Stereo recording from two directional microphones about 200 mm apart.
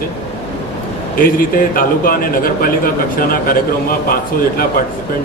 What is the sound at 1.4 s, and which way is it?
A man's voice, 45° left (ahead or behind).